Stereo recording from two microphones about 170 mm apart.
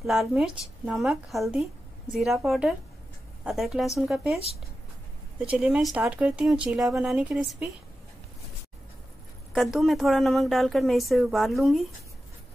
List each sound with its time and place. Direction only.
0.0 s a woman's voice: centre (ahead or behind)
5.4 s a woman's voice: 5° right (ahead or behind)
9.5 s a woman's voice: centre (ahead or behind)